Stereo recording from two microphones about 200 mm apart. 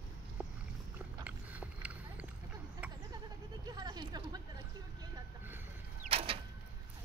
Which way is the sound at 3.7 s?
20° right (ahead or behind).